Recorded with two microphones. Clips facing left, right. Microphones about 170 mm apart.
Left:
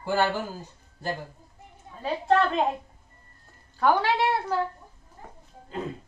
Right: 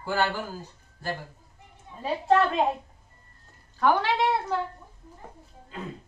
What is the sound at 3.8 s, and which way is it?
Speech, 10° left (ahead or behind).